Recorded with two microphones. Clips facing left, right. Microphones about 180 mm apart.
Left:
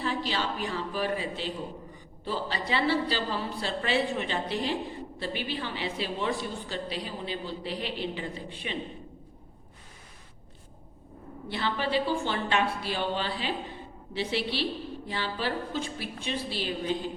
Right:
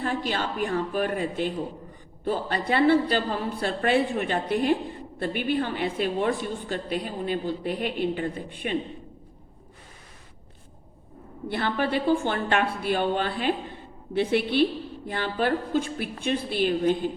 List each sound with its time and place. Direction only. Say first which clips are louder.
0.0 s a woman's voice: right 3 dB; 50° right (ahead or behind)
11.4 s a woman's voice: right 4 dB; 55° right (ahead or behind)